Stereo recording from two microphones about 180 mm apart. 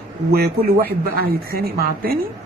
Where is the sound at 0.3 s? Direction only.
60° right (ahead or behind).